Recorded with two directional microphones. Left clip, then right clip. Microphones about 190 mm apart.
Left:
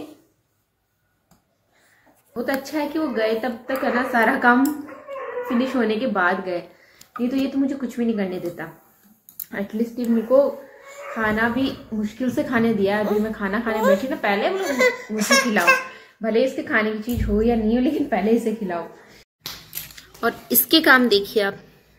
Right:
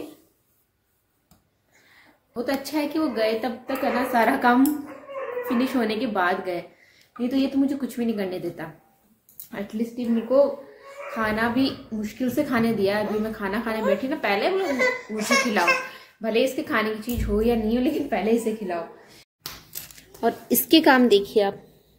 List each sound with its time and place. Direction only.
2.3 s a woman's voice: 10° right (ahead or behind)
9.5 s a woman's voice: centre (ahead or behind)
11.1 s a woman's voice: 10° right (ahead or behind)
14.6 s a child's voice: 65° left (ahead or behind)
16.2 s a woman's voice: centre (ahead or behind)
20.0 s a woman's voice: 15° right (ahead or behind)